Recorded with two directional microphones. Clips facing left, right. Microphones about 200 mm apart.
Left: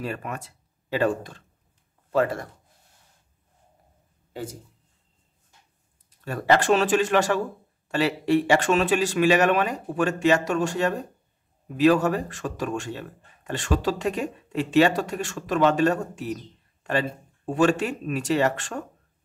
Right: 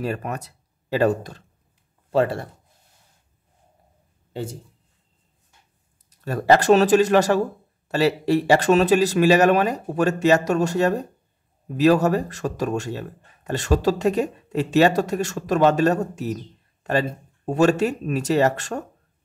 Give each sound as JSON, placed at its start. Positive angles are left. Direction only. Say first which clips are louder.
{"t": 0.0, "sound": "speech", "louder": "right 4 dB", "side_deg": -40}
{"t": 2.1, "sound": "speech", "louder": "right 3 dB", "side_deg": -30}
{"t": 4.3, "sound": "speech", "louder": "right 4 dB", "side_deg": -25}
{"t": 6.0, "sound": "speech", "louder": "right 4 dB", "side_deg": -40}
{"t": 17.5, "sound": "speech", "louder": "right 3 dB", "side_deg": -40}